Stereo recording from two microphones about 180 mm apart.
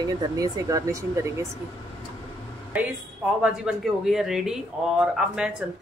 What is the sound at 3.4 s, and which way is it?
Speech, 5° right (ahead or behind).